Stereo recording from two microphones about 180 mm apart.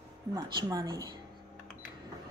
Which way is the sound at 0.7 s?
20° right (ahead or behind).